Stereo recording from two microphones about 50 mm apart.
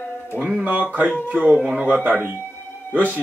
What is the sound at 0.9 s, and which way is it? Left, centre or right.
Speech, right.